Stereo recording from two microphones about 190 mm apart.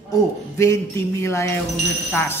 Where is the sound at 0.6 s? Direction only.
15° left (ahead or behind).